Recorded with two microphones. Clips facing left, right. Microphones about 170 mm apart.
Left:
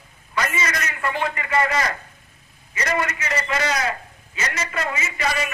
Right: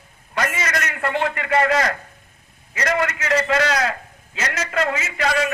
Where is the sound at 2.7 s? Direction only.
80° right.